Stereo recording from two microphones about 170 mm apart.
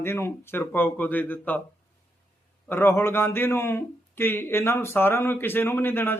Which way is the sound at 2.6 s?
15° left (ahead or behind).